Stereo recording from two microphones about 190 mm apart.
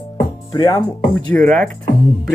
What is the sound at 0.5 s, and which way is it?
Speech, 20° left (ahead or behind).